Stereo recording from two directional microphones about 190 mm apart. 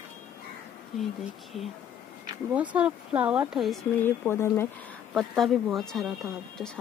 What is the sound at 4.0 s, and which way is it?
Speech, 10° left (ahead or behind).